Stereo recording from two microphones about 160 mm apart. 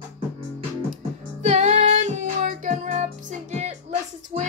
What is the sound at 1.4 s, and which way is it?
Music, 45° right (ahead or behind).